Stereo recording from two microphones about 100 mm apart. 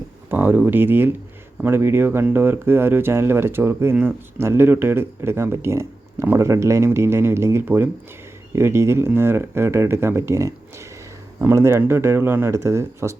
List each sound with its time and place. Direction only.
0.3 s speech: 20° right (ahead or behind)